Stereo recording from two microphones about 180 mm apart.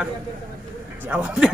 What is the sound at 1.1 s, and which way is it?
Speech, 5° right (ahead or behind).